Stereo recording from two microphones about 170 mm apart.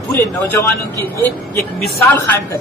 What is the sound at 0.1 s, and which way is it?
A man's voice, 20° left (ahead or behind).